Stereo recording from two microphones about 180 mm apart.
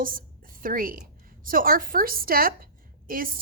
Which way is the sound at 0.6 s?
50° right (ahead or behind).